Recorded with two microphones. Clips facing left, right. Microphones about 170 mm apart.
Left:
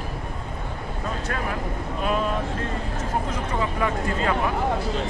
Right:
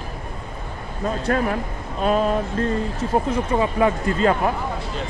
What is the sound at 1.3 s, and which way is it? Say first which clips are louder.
Speech: right 11 dB; 40° right (ahead or behind).